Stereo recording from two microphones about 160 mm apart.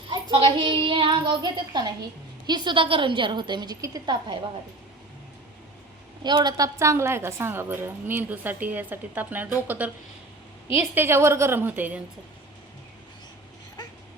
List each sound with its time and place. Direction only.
0.1 s a woman's voice: 30° right (ahead or behind)
6.2 s a woman's voice: 25° right (ahead or behind)